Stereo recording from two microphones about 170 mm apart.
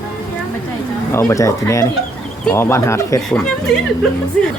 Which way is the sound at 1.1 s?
15° left (ahead or behind).